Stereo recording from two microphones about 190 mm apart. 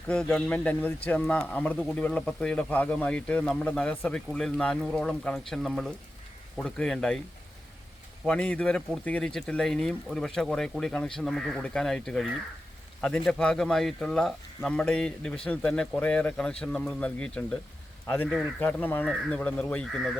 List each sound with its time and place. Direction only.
0.1 s speech: 5° left (ahead or behind)
8.2 s speech: 5° left (ahead or behind)